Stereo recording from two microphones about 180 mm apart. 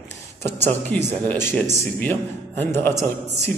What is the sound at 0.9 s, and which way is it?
A man's voice, 5° left (ahead or behind).